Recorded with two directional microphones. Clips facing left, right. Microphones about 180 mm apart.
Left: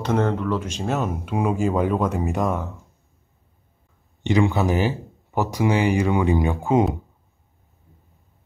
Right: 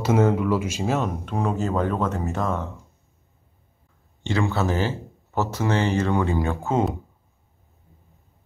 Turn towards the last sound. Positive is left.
turn(degrees=15)  # may be behind; listen again after turning